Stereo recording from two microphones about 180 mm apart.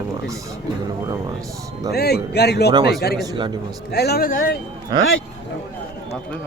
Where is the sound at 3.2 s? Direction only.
25° right (ahead or behind).